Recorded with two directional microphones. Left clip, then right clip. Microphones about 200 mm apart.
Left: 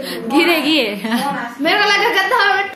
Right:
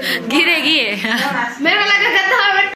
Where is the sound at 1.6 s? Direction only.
60° left (ahead or behind).